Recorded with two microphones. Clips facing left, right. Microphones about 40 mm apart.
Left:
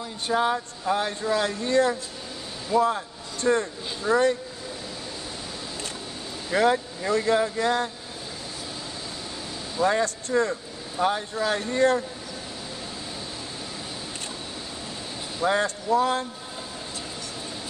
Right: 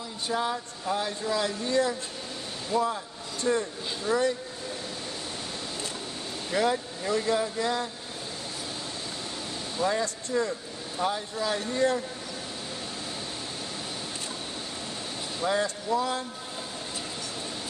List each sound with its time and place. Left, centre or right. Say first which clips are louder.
0.3 s speech: left 6 dB; left
6.5 s speech: left 5 dB; left
9.8 s speech: left 5 dB; left
15.4 s speech: left 4 dB; left